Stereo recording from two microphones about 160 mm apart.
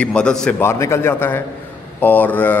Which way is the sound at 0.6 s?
15° left (ahead or behind).